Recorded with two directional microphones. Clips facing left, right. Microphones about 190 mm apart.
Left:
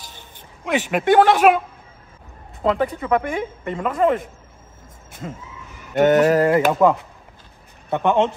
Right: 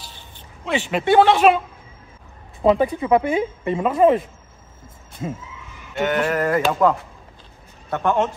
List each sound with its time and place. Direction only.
0.7 s speech: 10° left (ahead or behind)
2.6 s speech: 15° right (ahead or behind)
5.9 s speech: 45° left (ahead or behind)
6.4 s a man's voice: 15° left (ahead or behind)